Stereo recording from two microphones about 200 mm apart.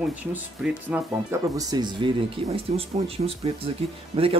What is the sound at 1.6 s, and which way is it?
Speech, 20° right (ahead or behind).